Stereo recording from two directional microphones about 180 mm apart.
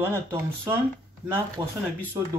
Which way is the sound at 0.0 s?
15° right (ahead or behind).